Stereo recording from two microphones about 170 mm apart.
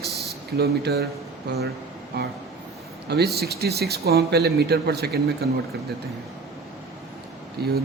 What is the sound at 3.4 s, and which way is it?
Speech, 70° right (ahead or behind).